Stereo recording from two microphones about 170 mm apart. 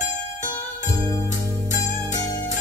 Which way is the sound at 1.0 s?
20° left (ahead or behind).